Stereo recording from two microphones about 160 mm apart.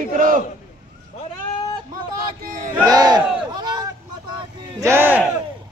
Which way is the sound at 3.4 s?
25° right (ahead or behind).